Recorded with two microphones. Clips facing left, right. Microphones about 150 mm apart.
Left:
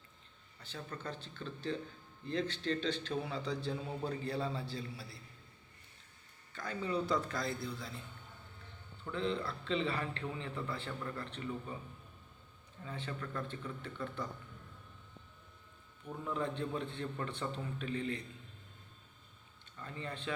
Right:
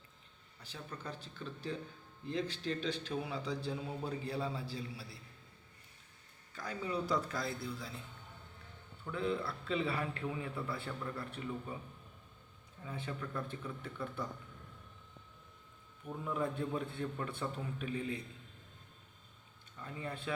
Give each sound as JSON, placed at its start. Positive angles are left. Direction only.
{"t": 0.6, "sound": "a man's voice", "side_deg": -10}
{"t": 6.5, "sound": "a man's voice", "side_deg": -5}
{"t": 9.0, "sound": "a man's voice", "side_deg": -5}
{"t": 12.8, "sound": "a man's voice", "side_deg": -10}
{"t": 16.0, "sound": "a man's voice", "side_deg": -10}
{"t": 19.8, "sound": "a man's voice", "side_deg": -10}